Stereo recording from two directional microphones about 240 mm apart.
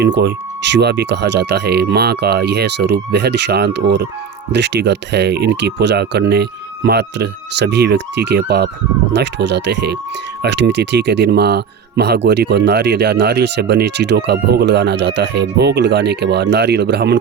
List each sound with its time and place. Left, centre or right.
0.0 s speech: right